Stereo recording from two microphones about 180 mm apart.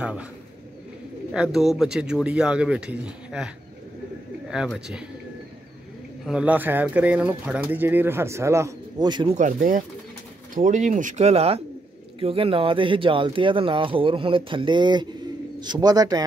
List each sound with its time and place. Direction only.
0.0 s speech: 5° right (ahead or behind)
1.3 s a man's voice: 5° right (ahead or behind)
6.2 s speech: 5° right (ahead or behind); by 9.3 s 25° right (ahead or behind)
9.3 s speech: 45° right (ahead or behind); by 16.3 s 20° right (ahead or behind)